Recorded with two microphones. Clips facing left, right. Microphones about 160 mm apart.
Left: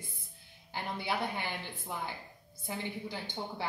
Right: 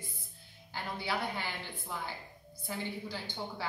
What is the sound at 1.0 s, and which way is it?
Speech, 20° left (ahead or behind).